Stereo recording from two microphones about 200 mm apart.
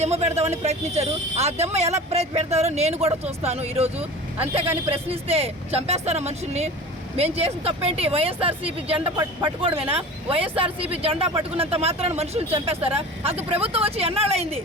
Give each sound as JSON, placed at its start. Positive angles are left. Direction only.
{"t": 0.0, "sound": "speech", "side_deg": -35}